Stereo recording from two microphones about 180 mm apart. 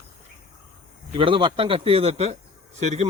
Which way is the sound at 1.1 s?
30° right (ahead or behind).